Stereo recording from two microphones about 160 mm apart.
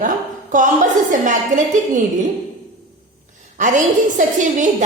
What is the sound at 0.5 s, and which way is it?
A woman's voice, 55° right (ahead or behind).